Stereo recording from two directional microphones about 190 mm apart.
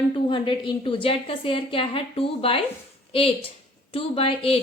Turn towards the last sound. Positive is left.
turn(degrees=30)  # may be behind; listen again after turning